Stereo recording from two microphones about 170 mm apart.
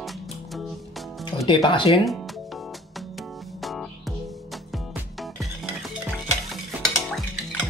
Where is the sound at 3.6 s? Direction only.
Centre (ahead or behind).